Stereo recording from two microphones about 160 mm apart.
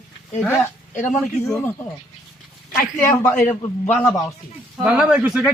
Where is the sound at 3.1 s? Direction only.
10° left (ahead or behind).